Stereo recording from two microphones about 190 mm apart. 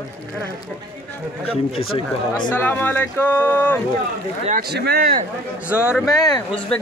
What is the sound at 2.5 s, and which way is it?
Speech, 10° left (ahead or behind).